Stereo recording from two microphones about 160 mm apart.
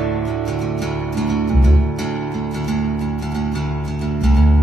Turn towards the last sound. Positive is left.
turn(degrees=0)  # may be behind; listen again after turning